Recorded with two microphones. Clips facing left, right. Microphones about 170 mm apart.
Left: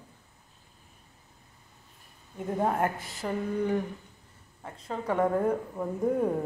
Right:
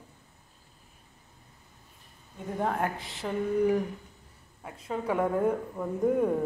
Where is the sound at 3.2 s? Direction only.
5° right (ahead or behind).